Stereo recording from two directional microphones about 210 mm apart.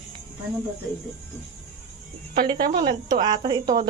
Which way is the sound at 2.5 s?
45° right (ahead or behind).